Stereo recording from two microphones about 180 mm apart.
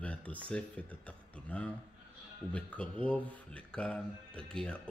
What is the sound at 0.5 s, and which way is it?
Speech, 5° left (ahead or behind).